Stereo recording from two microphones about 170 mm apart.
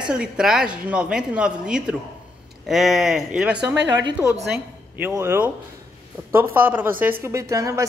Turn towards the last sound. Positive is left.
turn(degrees=-20)  # may be behind; listen again after turning